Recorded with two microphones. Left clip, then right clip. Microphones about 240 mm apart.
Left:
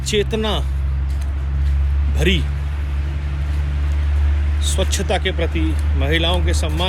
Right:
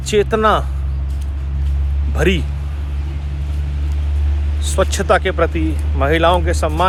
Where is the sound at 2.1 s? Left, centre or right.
Right.